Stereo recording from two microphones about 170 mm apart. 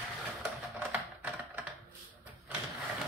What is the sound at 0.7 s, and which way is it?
Typewriter, 10° right (ahead or behind).